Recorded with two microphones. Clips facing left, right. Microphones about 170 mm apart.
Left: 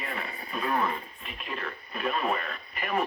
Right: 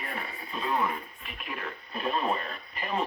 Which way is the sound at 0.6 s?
20° right (ahead or behind).